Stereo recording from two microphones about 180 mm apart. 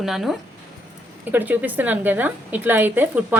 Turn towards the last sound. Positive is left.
turn(degrees=-10)  # may be behind; listen again after turning